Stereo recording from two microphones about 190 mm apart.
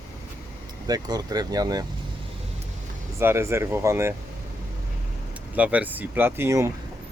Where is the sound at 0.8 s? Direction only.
20° right (ahead or behind).